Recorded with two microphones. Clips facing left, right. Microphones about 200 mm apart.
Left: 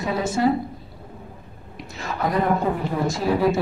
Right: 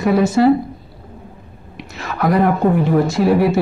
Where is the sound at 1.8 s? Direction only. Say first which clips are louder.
Right 5 dB; 75° right (ahead or behind).